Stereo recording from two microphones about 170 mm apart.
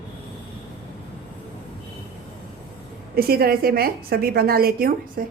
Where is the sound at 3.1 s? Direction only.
65° right (ahead or behind).